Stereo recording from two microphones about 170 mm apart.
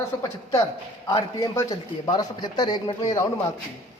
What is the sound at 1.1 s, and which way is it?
A man's voice, 20° left (ahead or behind).